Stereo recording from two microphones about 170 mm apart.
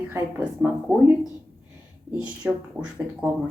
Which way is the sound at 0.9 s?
5° right (ahead or behind).